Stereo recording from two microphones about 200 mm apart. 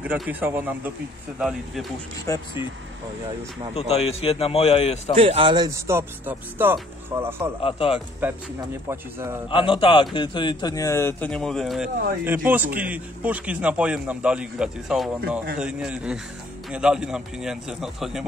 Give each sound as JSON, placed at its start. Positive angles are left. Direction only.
{"t": 0.0, "sound": "a man's voice", "side_deg": -5}
{"t": 2.2, "sound": "a man's voice", "side_deg": 15}
{"t": 3.7, "sound": "a man's voice", "side_deg": 30}
{"t": 5.2, "sound": "a man's voice", "side_deg": -25}
{"t": 7.6, "sound": "speech", "side_deg": 25}
{"t": 8.2, "sound": "a man's voice", "side_deg": -10}
{"t": 9.5, "sound": "a man's voice", "side_deg": 25}